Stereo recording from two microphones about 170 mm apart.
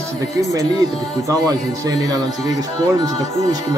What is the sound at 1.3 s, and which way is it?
Speech, 20° right (ahead or behind).